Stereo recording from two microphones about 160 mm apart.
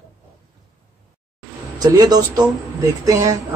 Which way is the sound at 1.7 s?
25° right (ahead or behind).